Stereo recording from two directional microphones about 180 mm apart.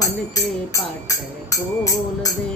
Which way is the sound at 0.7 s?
20° left (ahead or behind).